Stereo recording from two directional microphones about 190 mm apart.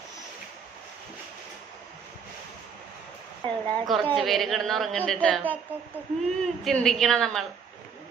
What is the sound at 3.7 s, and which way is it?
A woman's voice, 5° left (ahead or behind).